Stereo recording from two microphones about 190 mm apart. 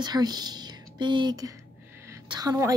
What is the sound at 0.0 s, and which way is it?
Speech, 20° right (ahead or behind).